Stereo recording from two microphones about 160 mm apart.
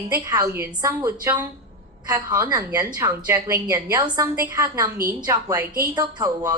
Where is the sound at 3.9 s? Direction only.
25° right (ahead or behind).